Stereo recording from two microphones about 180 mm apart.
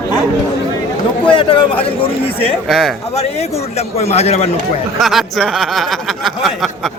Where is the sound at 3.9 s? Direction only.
35° left (ahead or behind).